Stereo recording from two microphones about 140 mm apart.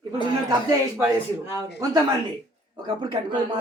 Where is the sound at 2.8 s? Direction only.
35° right (ahead or behind).